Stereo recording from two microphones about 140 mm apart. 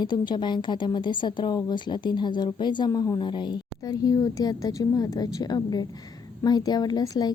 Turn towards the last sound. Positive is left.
turn(degrees=30)  # may be behind; listen again after turning